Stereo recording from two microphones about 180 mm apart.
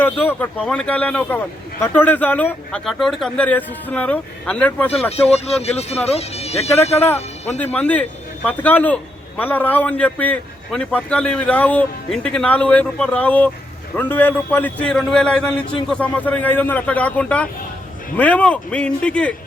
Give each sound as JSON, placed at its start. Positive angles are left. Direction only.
{"t": 0.0, "sound": "a man's voice", "side_deg": 10}
{"t": 5.1, "sound": "speech", "side_deg": 35}
{"t": 7.6, "sound": "a man's voice", "side_deg": 10}